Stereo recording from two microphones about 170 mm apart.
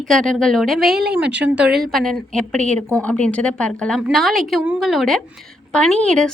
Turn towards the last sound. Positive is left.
turn(degrees=5)  # may be behind; listen again after turning